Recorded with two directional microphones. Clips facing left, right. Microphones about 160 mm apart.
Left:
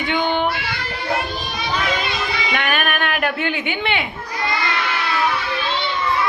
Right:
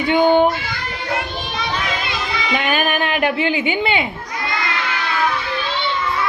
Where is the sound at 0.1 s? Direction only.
40° right (ahead or behind).